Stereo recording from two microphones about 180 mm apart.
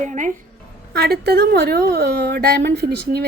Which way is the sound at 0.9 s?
60° right (ahead or behind).